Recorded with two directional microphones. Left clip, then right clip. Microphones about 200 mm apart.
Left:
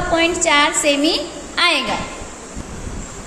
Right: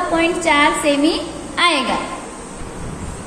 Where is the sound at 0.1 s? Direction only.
15° left (ahead or behind).